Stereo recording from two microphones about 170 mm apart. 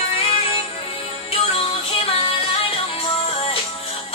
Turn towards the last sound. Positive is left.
turn(degrees=35)  # may be behind; listen again after turning